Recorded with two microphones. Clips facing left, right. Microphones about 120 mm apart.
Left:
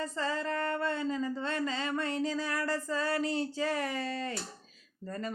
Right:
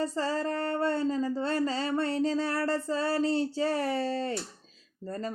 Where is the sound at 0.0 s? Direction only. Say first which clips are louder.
Right 4 dB; 35° right (ahead or behind).